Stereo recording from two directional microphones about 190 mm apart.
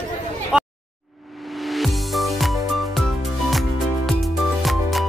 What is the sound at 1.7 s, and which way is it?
Music, centre (ahead or behind).